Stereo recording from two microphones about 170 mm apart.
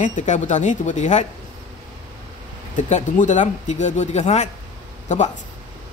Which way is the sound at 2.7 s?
45° left (ahead or behind).